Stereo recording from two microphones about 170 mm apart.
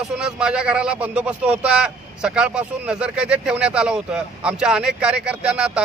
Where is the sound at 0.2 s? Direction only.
5° right (ahead or behind).